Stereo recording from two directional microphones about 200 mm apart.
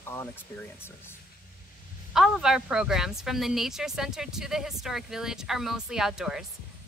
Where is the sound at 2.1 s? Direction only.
Centre (ahead or behind).